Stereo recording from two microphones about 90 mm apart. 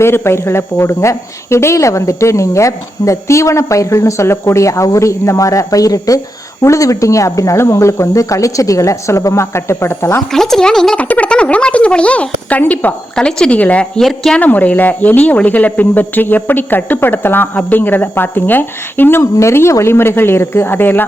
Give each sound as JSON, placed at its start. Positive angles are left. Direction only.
{"t": 0.0, "sound": "speech", "side_deg": 30}
{"t": 10.3, "sound": "speech", "side_deg": 5}
{"t": 14.0, "sound": "speech", "side_deg": 0}
{"t": 14.3, "sound": "speech", "side_deg": 20}